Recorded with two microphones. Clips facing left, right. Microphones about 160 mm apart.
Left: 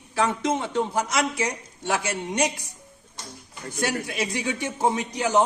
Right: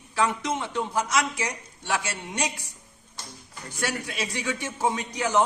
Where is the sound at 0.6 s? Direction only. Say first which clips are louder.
Left 3 dB; 25° left (ahead or behind).